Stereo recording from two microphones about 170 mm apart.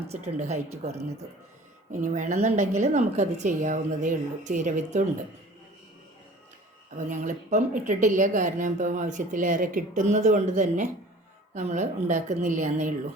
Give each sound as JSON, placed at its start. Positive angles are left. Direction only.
{"t": 0.1, "sound": "a woman's voice", "side_deg": -40}
{"t": 7.1, "sound": "speech", "side_deg": -45}